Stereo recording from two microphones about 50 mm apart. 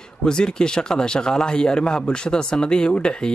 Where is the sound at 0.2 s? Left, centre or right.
Centre.